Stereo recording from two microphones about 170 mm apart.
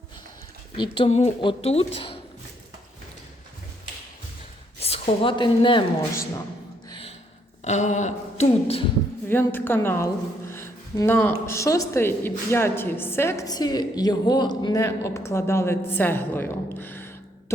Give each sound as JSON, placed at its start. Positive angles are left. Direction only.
{"t": 0.8, "sound": "speech", "side_deg": 30}
{"t": 4.8, "sound": "a woman's voice", "side_deg": 35}
{"t": 7.6, "sound": "a sound", "side_deg": 45}
{"t": 9.3, "sound": "a woman's voice", "side_deg": 10}
{"t": 10.5, "sound": "a sound", "side_deg": 15}
{"t": 11.4, "sound": "a woman's voice", "side_deg": 15}